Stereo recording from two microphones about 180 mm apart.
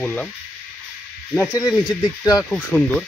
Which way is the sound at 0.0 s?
10° left (ahead or behind).